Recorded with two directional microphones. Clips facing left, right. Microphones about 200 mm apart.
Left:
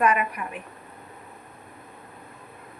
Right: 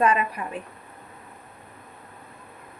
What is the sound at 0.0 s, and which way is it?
Speech, 30° right (ahead or behind).